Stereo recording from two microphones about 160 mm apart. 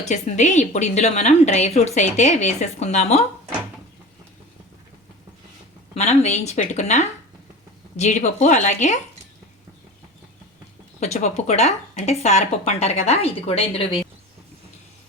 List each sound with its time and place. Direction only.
0.0 s a woman's voice: 45° left (ahead or behind)
5.9 s a woman's voice: 45° left (ahead or behind)
11.0 s a woman's voice: 45° left (ahead or behind)